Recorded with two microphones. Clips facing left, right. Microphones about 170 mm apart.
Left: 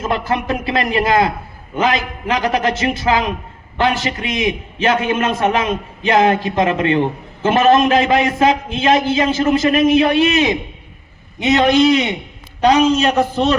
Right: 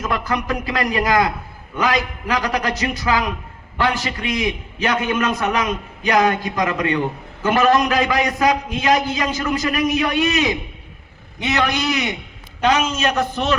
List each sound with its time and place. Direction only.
0.0 s a man's voice: 25° left (ahead or behind)